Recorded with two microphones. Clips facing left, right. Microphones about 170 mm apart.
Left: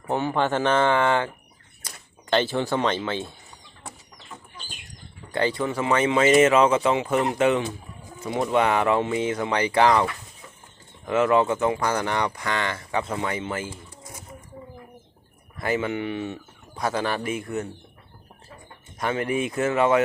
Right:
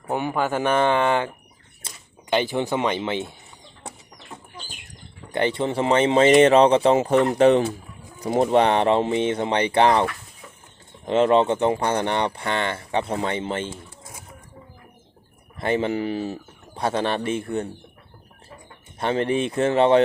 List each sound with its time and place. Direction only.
0.1 s speech: 10° right (ahead or behind)
1.8 s a sound: 25° right (ahead or behind)
2.3 s speech: 15° right (ahead or behind)
5.3 s speech: 25° right (ahead or behind)
15.5 s speech: 30° right (ahead or behind)
18.9 s speech: 30° right (ahead or behind)